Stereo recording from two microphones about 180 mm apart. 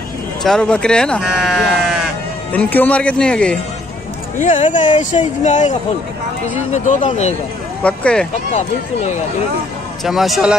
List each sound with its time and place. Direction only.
0.4 s speech: 5° left (ahead or behind)
2.5 s speech: 10° left (ahead or behind)
4.4 s speech: 40° left (ahead or behind)
7.8 s speech: 5° left (ahead or behind)
8.5 s speech: 40° left (ahead or behind)
10.0 s speech: centre (ahead or behind)